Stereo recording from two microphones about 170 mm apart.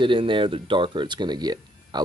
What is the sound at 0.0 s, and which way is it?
Speech, 30° right (ahead or behind).